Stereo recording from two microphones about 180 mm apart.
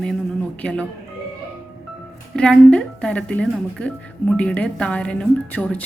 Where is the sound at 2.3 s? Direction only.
5° left (ahead or behind).